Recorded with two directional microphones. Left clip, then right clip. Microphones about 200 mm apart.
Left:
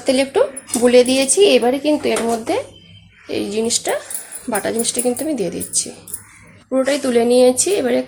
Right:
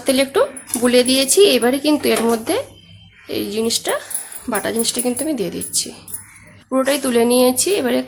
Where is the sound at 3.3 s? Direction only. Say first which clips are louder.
Left 1 dB; centre (ahead or behind).